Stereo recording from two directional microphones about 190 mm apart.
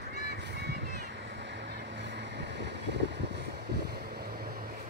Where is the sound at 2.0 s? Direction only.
65° right (ahead or behind).